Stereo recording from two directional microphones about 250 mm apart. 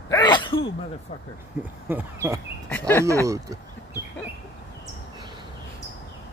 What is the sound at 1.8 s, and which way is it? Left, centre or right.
Speech, centre.